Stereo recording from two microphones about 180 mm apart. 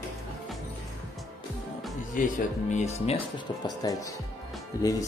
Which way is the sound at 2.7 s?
40° left (ahead or behind).